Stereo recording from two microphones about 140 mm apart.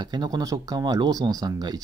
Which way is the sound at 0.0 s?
30° right (ahead or behind).